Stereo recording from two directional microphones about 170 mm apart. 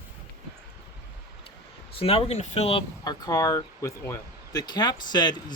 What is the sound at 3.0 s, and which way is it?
Speech, 20° left (ahead or behind).